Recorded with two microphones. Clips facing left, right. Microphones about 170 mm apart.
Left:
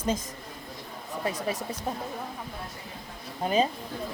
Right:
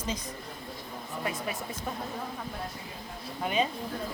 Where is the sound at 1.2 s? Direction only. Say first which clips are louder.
Left 4 dB; 40° left (ahead or behind).